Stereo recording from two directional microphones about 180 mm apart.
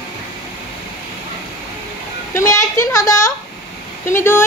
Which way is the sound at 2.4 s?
15° left (ahead or behind).